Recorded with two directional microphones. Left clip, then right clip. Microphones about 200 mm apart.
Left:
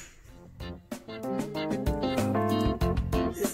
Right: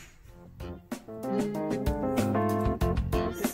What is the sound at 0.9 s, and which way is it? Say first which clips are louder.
Music: right 1 dB; centre (ahead or behind).